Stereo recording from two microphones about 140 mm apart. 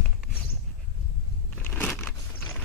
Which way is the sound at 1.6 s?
10° left (ahead or behind).